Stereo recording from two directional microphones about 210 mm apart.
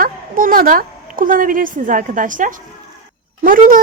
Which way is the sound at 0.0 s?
40° right (ahead or behind).